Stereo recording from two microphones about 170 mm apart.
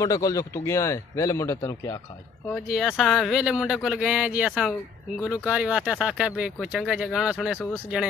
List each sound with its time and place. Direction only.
0.0 s speech: 20° left (ahead or behind)
2.5 s speech: centre (ahead or behind)